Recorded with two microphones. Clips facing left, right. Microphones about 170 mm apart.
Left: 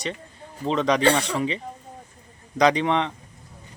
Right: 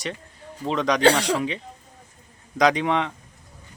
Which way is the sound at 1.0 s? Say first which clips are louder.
Right 2 dB; 90° right.